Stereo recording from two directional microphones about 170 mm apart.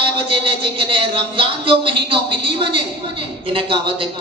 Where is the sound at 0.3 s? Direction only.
30° right (ahead or behind).